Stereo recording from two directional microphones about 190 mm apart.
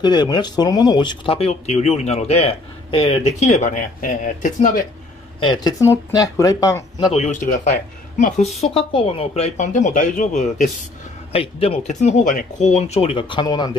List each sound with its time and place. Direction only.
0.0 s speech: 25° left (ahead or behind); by 4.8 s 40° left (ahead or behind)
5.4 s speech: 20° left (ahead or behind)
7.2 s speech: 40° left (ahead or behind); by 13.7 s 25° left (ahead or behind)